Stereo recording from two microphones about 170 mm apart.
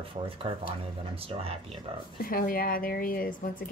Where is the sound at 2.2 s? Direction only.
55° left (ahead or behind).